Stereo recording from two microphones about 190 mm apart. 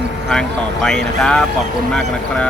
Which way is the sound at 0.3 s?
5° left (ahead or behind).